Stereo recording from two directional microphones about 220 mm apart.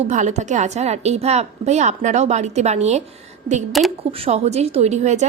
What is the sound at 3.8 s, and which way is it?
Speech, centre (ahead or behind).